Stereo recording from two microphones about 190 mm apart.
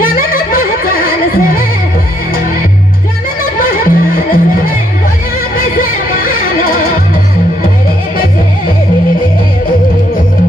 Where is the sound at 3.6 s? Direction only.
45° left (ahead or behind).